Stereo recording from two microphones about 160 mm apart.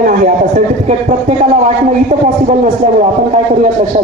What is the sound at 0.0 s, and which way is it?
A man's voice, 55° right (ahead or behind).